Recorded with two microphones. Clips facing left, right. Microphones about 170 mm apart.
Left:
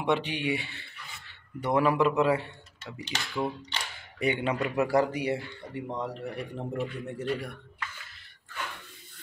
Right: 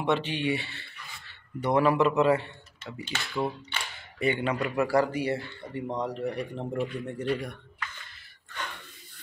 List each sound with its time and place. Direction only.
0.0 s speech: 15° left (ahead or behind)
3.0 s speech: 10° right (ahead or behind)
4.2 s speech: 15° left (ahead or behind)